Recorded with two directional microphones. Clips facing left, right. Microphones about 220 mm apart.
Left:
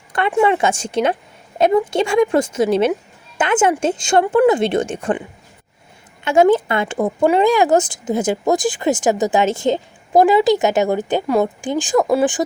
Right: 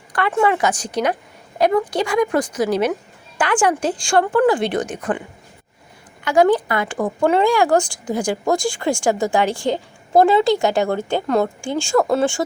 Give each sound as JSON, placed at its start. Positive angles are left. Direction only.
{"t": 0.1, "sound": "speech", "side_deg": 20}
{"t": 6.2, "sound": "speech", "side_deg": 25}